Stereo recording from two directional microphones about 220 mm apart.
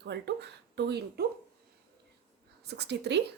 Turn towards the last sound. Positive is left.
turn(degrees=-50)  # may be behind; listen again after turning